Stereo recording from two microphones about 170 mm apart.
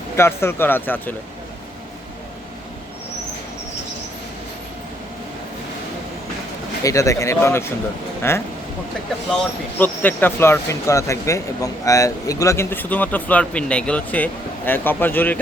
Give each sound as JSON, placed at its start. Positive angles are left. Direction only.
{"t": 0.2, "sound": "speech", "side_deg": 15}
{"t": 6.8, "sound": "speech", "side_deg": 20}
{"t": 9.7, "sound": "speech", "side_deg": 10}